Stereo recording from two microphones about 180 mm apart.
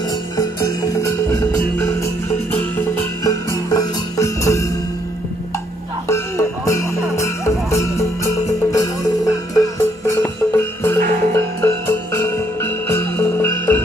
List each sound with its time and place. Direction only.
0.4 s music: 20° left (ahead or behind)
6.0 s music: 15° left (ahead or behind)